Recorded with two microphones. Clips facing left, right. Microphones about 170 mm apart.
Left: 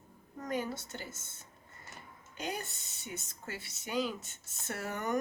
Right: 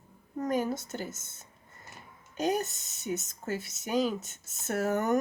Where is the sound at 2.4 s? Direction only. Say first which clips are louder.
Right 10 dB; 45° right (ahead or behind).